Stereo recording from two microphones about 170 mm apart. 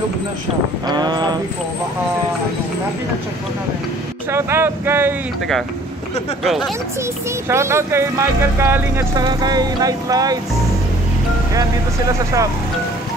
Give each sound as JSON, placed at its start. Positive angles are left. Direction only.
{"t": 0.8, "sound": "speech", "side_deg": -25}
{"t": 4.3, "sound": "speech", "side_deg": -15}
{"t": 6.4, "sound": "speech", "side_deg": 0}
{"t": 7.4, "sound": "speech", "side_deg": -15}